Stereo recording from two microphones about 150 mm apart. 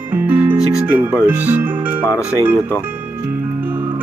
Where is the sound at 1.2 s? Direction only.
10° right (ahead or behind).